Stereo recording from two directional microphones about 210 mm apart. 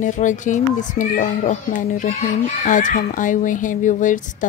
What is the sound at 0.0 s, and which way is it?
A child's voice, 35° left (ahead or behind).